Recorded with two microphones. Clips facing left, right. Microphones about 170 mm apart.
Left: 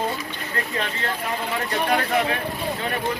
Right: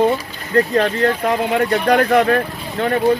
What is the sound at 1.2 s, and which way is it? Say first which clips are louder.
Speech: right 10 dB; 65° right (ahead or behind).